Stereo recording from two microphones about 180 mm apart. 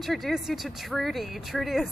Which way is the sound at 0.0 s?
Centre (ahead or behind).